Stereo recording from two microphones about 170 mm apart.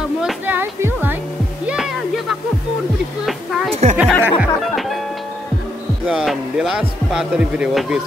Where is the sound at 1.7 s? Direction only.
Centre (ahead or behind).